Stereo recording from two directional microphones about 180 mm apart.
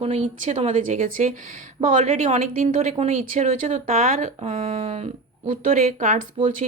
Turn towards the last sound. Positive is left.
turn(degrees=-50)  # may be behind; listen again after turning